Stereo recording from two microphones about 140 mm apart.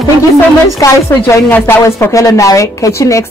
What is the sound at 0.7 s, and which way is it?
A woman's voice, 20° left (ahead or behind).